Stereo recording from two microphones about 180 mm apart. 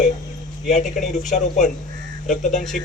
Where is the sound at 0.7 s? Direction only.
45° left (ahead or behind).